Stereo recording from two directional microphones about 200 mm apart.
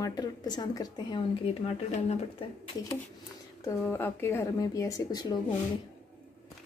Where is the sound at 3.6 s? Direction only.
15° left (ahead or behind).